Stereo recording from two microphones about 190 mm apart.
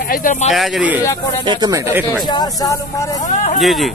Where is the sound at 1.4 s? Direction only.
25° right (ahead or behind).